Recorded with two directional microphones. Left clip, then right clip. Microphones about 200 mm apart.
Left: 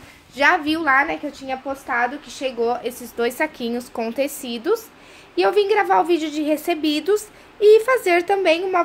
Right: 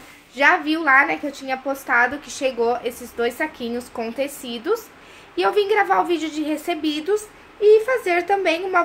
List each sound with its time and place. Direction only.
0.4 s a woman's voice: 20° left (ahead or behind)